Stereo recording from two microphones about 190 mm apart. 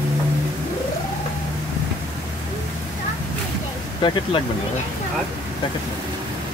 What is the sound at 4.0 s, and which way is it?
Speech, 25° left (ahead or behind).